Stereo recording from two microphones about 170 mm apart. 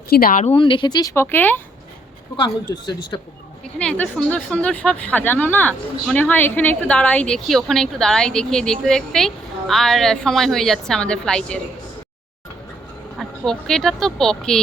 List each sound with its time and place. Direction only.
0.1 s speech: 60° left (ahead or behind)
0.4 s speech: 30° left (ahead or behind); by 1.6 s 10° left (ahead or behind)
2.3 s speech: 25° left (ahead or behind)
3.6 s a woman's voice: 5° left (ahead or behind)
13.1 s a woman's voice: 5° left (ahead or behind)